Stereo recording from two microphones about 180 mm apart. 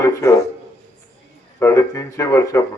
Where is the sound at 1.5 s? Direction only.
15° left (ahead or behind).